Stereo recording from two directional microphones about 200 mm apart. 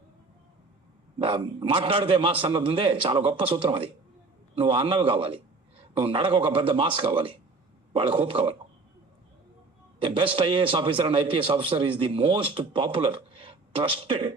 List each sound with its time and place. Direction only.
1.2 s a man's voice: 25° right (ahead or behind)
10.0 s a man's voice: 25° right (ahead or behind)